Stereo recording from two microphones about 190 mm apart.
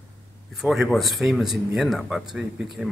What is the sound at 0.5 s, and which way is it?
Speech, centre (ahead or behind).